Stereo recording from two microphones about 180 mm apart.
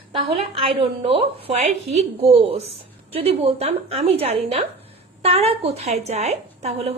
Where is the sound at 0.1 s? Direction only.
30° right (ahead or behind).